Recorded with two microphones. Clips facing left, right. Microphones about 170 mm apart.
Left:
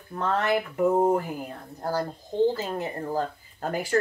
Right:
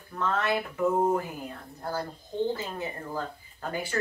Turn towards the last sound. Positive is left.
turn(degrees=40)  # may be behind; listen again after turning